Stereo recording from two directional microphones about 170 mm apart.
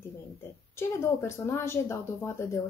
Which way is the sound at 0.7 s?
15° left (ahead or behind).